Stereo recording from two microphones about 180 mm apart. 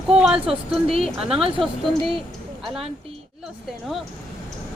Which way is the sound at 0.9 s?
35° right (ahead or behind).